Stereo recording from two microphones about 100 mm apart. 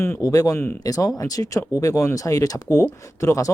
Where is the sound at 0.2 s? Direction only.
35° left (ahead or behind).